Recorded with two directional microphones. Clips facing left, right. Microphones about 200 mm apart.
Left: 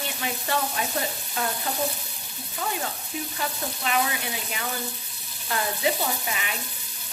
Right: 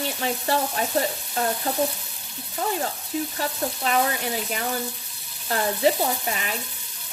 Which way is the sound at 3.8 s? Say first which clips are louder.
Right 3 dB; 40° right (ahead or behind).